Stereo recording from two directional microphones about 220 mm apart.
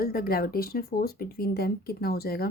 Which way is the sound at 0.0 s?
45° left (ahead or behind).